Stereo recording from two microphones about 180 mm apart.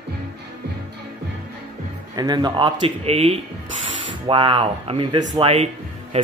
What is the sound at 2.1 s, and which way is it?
Speech, 20° right (ahead or behind).